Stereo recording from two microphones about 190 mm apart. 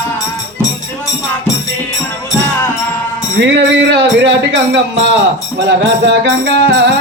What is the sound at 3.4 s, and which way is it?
Music, 65° right (ahead or behind).